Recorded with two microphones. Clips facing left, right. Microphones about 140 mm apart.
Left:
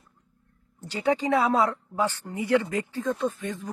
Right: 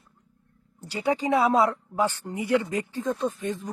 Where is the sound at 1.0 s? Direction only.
10° right (ahead or behind).